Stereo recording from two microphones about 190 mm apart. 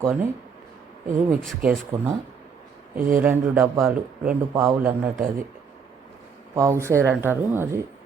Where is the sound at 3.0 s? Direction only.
45° right (ahead or behind).